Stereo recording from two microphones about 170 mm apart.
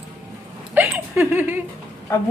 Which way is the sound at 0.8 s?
15° right (ahead or behind).